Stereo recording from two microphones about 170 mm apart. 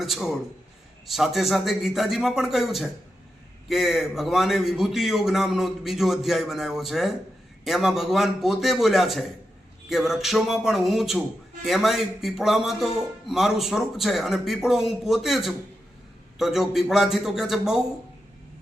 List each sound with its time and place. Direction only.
0.0 s a man's voice: centre (ahead or behind)